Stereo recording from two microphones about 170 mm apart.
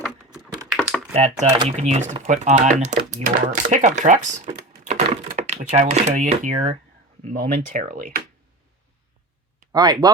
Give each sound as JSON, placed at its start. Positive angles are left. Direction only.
{"t": 0.0, "sound": "typing", "side_deg": 0}
{"t": 1.1, "sound": "speech", "side_deg": -40}
{"t": 9.7, "sound": "speech", "side_deg": -25}